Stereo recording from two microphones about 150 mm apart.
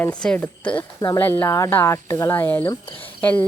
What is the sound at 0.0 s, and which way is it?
Speech, 5° left (ahead or behind).